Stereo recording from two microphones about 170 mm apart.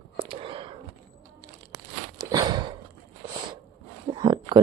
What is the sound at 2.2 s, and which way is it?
Walk, 25° right (ahead or behind).